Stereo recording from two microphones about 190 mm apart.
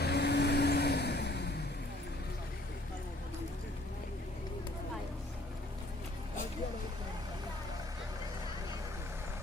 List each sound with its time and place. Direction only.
0.0 s vehicle: 60° left (ahead or behind)